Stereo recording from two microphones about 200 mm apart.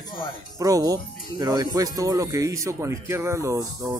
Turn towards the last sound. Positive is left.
turn(degrees=-15)  # may be behind; listen again after turning